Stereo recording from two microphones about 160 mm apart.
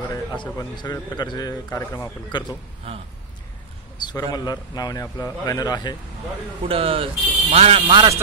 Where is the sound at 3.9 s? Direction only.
25° left (ahead or behind).